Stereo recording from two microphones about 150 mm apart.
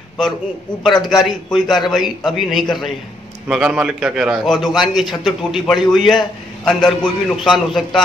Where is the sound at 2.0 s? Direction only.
30° left (ahead or behind).